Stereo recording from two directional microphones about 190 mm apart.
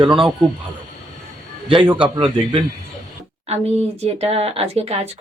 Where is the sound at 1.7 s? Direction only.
25° right (ahead or behind).